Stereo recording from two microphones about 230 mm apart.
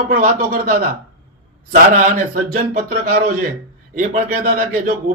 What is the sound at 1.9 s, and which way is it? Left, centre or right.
A man's voice, right.